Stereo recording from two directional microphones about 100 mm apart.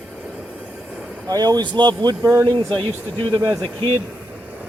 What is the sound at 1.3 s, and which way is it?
Speech, 40° right (ahead or behind).